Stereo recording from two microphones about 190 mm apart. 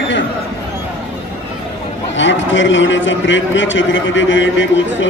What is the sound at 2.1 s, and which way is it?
A man's voice, 75° left (ahead or behind).